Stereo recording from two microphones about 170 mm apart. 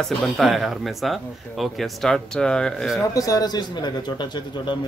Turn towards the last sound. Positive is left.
turn(degrees=25)  # may be behind; listen again after turning